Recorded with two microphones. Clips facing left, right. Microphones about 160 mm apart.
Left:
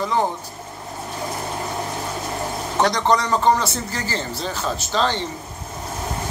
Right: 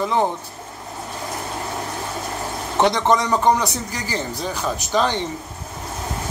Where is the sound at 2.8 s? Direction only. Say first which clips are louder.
Right 1 dB; 20° right (ahead or behind).